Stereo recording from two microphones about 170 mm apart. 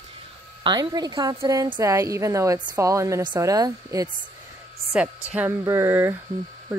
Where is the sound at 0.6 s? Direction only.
25° right (ahead or behind).